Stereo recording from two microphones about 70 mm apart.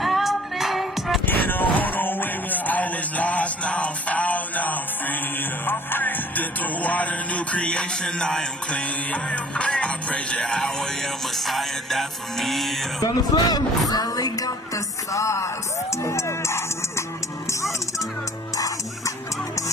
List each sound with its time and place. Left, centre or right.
0.0 s music: centre
1.2 s music: left; by 12.7 s centre
13.0 s speech: left
15.1 s music: left